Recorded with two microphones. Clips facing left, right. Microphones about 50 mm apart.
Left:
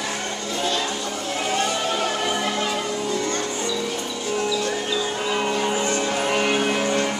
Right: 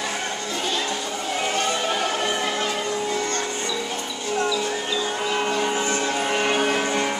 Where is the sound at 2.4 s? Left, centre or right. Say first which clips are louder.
Left 1 dB; centre.